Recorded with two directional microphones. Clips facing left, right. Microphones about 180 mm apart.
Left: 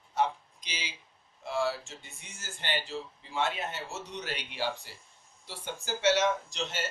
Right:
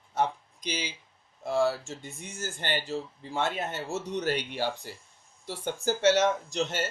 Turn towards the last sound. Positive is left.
turn(degrees=-45)  # may be behind; listen again after turning